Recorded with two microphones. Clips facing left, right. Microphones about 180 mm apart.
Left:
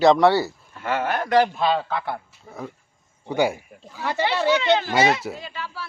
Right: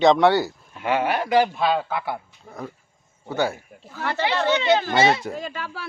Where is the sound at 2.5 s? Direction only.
Centre (ahead or behind).